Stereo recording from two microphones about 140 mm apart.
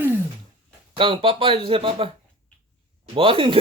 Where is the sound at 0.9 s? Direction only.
40° right (ahead or behind).